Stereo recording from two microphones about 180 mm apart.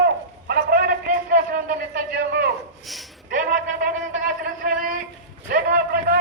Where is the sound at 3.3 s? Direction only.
45° right (ahead or behind).